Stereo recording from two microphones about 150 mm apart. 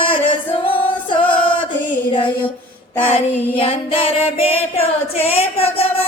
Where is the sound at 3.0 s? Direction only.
40° left (ahead or behind).